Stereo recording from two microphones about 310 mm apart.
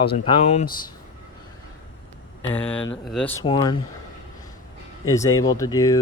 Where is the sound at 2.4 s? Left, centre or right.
Centre.